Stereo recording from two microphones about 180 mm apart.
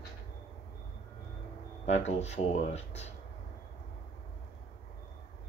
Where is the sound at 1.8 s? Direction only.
35° left (ahead or behind).